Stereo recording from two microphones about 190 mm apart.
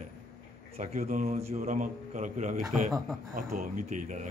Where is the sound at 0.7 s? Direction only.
40° right (ahead or behind).